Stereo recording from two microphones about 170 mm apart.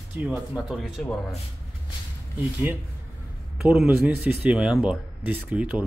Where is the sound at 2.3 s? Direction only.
10° right (ahead or behind).